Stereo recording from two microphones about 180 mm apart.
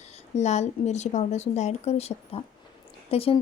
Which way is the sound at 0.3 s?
40° left (ahead or behind).